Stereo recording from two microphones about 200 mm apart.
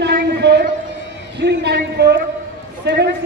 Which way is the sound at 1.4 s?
55° right (ahead or behind).